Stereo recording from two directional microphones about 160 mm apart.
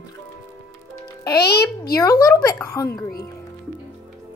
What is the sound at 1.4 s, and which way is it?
Speech, 85° left.